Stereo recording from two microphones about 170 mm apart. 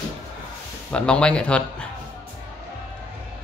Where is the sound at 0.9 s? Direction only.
5° left (ahead or behind).